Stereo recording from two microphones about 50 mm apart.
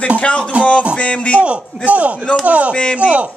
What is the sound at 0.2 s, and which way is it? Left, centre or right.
A man's voice, left.